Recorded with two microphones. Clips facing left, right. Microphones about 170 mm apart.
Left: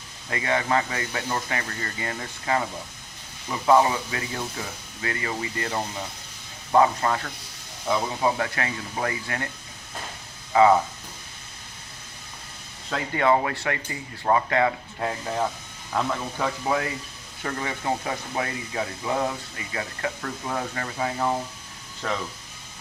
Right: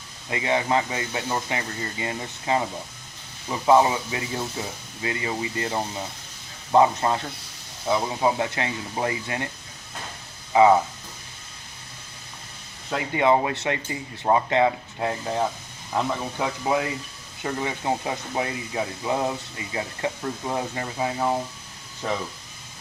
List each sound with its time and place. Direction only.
0.3 s speech: 20° right (ahead or behind)
10.5 s speech: 15° right (ahead or behind)
12.9 s speech: 15° right (ahead or behind)